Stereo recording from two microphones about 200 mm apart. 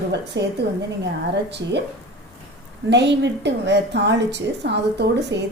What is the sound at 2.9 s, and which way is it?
A woman's voice, 60° right (ahead or behind).